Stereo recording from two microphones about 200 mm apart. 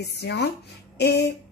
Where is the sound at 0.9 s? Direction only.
55° left (ahead or behind).